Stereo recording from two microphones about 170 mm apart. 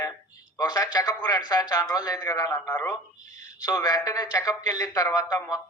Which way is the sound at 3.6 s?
20° left (ahead or behind).